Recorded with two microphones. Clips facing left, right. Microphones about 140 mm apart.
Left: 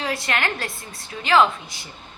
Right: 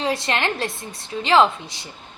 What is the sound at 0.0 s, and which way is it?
A woman's voice, 25° right (ahead or behind).